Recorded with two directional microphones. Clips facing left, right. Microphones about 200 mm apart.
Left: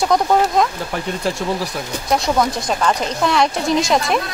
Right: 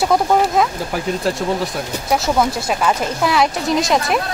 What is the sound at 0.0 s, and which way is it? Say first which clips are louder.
Speech: even; 5° right (ahead or behind).